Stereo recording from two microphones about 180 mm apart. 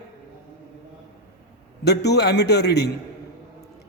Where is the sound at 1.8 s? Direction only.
65° left (ahead or behind).